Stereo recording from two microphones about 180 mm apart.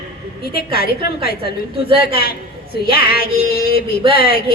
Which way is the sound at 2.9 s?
55° left (ahead or behind).